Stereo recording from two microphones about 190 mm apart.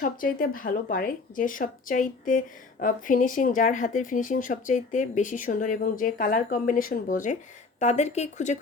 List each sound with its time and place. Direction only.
0.0 s speech: 45° left (ahead or behind)